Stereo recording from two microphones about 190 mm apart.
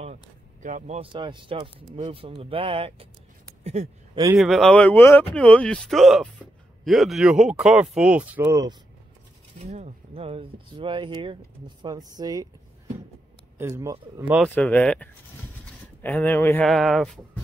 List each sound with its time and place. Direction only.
0.0 s a sound: 40° right (ahead or behind)
1.1 s speech: 25° right (ahead or behind)
4.4 s speech: centre (ahead or behind); by 8.7 s 15° right (ahead or behind)
9.6 s speech: 35° right (ahead or behind); by 12.4 s 20° right (ahead or behind)
13.6 s a man's voice: 15° right (ahead or behind)
14.5 s speech: 5° left (ahead or behind)
16.6 s speech: centre (ahead or behind)